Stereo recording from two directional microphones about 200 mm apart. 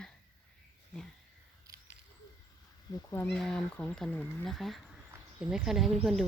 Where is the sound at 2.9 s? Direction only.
20° left (ahead or behind).